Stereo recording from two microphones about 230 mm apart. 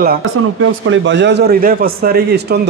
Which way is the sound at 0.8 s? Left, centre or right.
Right.